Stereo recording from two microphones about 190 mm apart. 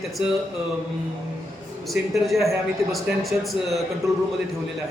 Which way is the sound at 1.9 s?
Centre (ahead or behind).